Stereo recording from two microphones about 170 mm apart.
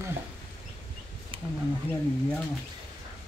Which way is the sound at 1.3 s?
30° right (ahead or behind).